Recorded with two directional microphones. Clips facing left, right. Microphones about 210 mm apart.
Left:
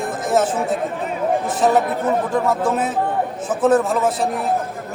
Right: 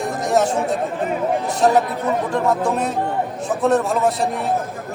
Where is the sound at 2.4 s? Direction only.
5° left (ahead or behind).